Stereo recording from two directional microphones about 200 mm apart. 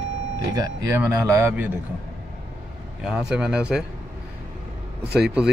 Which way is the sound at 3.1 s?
5° right (ahead or behind).